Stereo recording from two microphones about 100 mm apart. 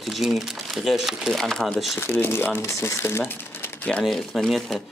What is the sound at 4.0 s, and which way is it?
Speech, 5° left (ahead or behind).